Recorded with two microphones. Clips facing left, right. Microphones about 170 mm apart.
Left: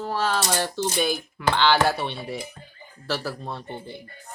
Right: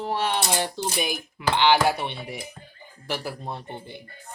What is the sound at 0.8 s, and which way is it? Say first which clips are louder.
Speech: left 3 dB; 15° right (ahead or behind).